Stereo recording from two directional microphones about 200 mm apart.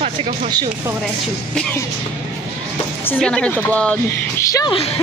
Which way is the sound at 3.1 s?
5° left (ahead or behind).